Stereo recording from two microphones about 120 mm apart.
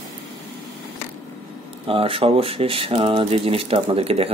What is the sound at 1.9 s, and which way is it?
Speech, 50° right (ahead or behind).